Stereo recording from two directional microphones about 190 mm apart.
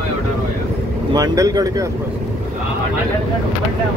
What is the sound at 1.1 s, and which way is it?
Speech, 20° right (ahead or behind).